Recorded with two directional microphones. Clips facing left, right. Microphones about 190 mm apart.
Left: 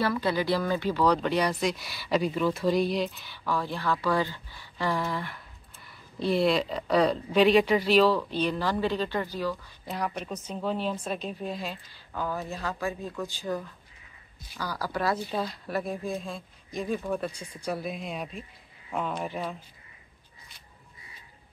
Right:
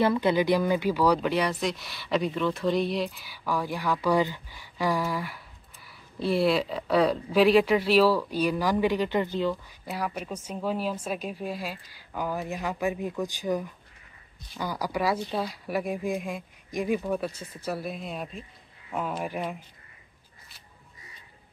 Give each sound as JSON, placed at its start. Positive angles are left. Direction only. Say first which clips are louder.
{"t": 0.0, "sound": "a woman's voice", "louder": "right 4 dB", "side_deg": -20}
{"t": 9.8, "sound": "a woman's voice", "louder": "even", "side_deg": -5}